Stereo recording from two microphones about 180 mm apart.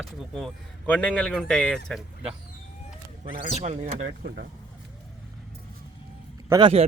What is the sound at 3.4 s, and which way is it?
Speech, 40° right (ahead or behind).